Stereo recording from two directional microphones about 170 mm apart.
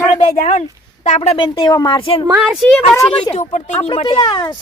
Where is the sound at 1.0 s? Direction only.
40° left (ahead or behind).